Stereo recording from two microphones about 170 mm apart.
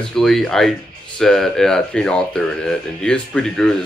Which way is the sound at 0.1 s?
Centre (ahead or behind).